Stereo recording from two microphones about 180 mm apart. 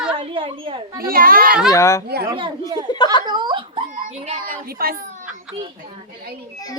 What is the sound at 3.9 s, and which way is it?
A child's voice, 40° right (ahead or behind).